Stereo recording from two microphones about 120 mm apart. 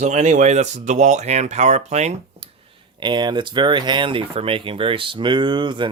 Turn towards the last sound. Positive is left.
turn(degrees=-40)  # may be behind; listen again after turning